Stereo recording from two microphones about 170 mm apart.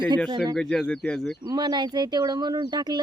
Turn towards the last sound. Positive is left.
turn(degrees=-25)  # may be behind; listen again after turning